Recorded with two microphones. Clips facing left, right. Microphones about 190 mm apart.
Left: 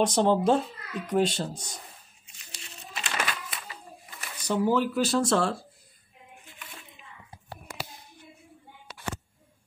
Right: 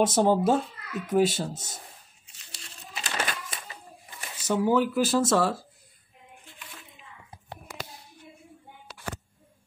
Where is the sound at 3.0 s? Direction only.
40° right (ahead or behind).